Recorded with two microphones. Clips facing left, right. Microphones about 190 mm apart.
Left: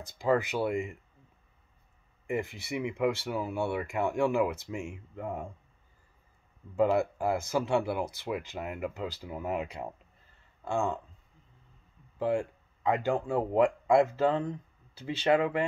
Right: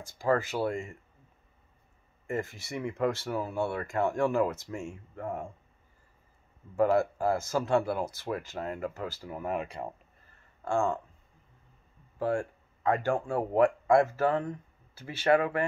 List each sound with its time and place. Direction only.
0.2 s speech: 15° left (ahead or behind)
2.2 s speech: 15° left (ahead or behind)
6.8 s speech: 15° left (ahead or behind)
12.2 s speech: 20° left (ahead or behind)